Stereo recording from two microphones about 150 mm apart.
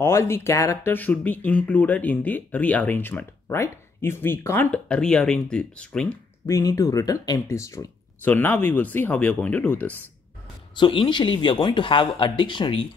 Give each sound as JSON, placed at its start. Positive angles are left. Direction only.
{"t": 0.0, "sound": "speech", "side_deg": 15}
{"t": 6.4, "sound": "speech", "side_deg": 20}
{"t": 10.8, "sound": "speech", "side_deg": 35}